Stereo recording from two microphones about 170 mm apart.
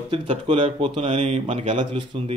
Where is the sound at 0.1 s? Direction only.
30° right (ahead or behind).